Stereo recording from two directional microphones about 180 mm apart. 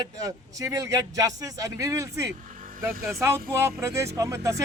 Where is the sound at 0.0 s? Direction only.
20° right (ahead or behind).